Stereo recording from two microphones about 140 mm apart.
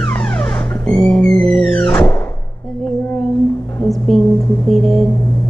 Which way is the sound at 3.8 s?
Centre (ahead or behind).